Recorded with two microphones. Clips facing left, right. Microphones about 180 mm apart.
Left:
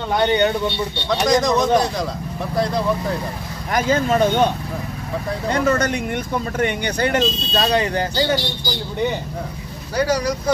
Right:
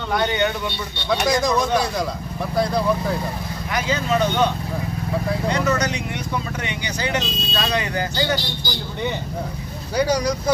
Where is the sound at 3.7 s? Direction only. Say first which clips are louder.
Left 4 dB; 50° left (ahead or behind).